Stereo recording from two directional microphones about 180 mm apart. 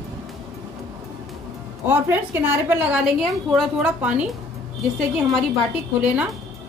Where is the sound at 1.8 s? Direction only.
10° right (ahead or behind).